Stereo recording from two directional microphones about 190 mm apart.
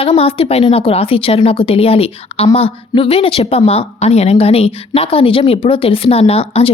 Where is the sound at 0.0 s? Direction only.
30° left (ahead or behind).